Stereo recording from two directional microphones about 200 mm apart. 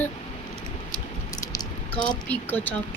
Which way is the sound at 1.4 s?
20° left (ahead or behind).